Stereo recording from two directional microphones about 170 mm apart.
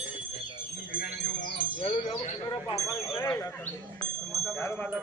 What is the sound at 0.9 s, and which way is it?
Wind chime, 65° left (ahead or behind).